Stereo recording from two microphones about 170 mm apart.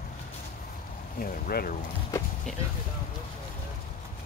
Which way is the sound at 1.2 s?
60° left (ahead or behind).